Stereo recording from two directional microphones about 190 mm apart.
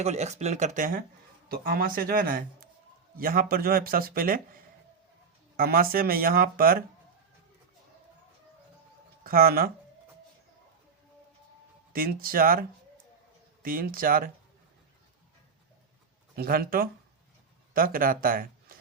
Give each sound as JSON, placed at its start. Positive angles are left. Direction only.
{"t": 0.0, "sound": "speech", "side_deg": -35}
{"t": 5.5, "sound": "speech", "side_deg": -50}
{"t": 9.2, "sound": "speech", "side_deg": -50}
{"t": 11.9, "sound": "speech", "side_deg": -50}
{"t": 16.3, "sound": "speech", "side_deg": -50}